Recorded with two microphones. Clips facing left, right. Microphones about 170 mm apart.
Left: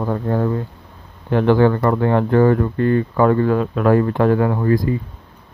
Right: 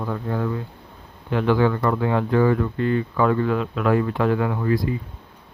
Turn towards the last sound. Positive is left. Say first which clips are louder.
# left 5 dB
turn(degrees=45)  # may be behind; listen again after turning